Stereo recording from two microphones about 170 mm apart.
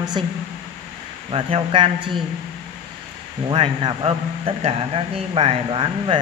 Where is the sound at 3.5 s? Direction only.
30° right (ahead or behind).